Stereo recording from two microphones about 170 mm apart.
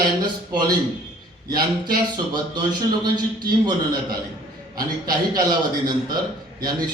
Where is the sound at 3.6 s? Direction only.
25° right (ahead or behind).